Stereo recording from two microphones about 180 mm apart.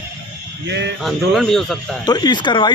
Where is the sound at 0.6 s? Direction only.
70° right (ahead or behind).